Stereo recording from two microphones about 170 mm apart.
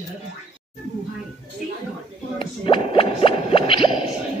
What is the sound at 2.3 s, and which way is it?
Plop, 30° left (ahead or behind).